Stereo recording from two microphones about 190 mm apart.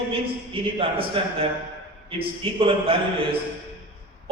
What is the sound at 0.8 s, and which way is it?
A man's voice, 30° right (ahead or behind).